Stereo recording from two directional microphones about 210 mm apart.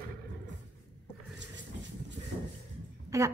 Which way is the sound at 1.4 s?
60° right (ahead or behind).